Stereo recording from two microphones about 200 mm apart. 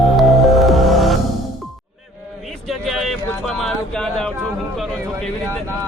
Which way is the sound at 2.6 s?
Centre (ahead or behind).